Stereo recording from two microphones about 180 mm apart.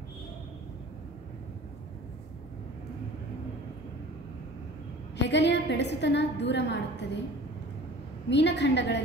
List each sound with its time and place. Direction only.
5.1 s a woman's voice: 75° left (ahead or behind)
8.3 s a woman's voice: 75° left (ahead or behind)